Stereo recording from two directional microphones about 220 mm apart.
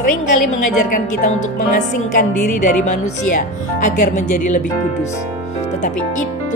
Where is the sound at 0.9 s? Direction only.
35° left (ahead or behind).